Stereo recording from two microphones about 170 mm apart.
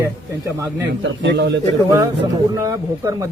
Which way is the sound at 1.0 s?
90° right.